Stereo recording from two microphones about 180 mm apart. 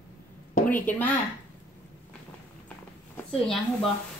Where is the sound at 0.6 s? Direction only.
10° left (ahead or behind).